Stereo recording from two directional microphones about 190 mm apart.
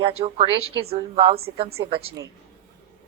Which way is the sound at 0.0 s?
30° right (ahead or behind).